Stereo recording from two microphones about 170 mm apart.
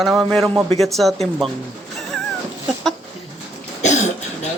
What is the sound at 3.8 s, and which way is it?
Cough, 45° left (ahead or behind).